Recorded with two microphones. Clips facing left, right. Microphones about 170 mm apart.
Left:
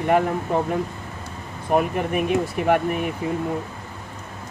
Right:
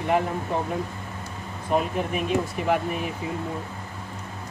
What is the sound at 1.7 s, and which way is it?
Speech, 55° left (ahead or behind).